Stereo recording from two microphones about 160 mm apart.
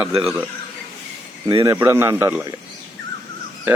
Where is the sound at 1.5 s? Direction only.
25° right (ahead or behind).